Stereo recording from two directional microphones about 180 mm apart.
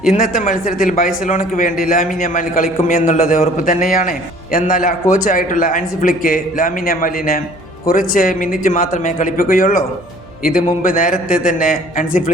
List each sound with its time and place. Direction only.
0.2 s a man's voice: 50° left (ahead or behind)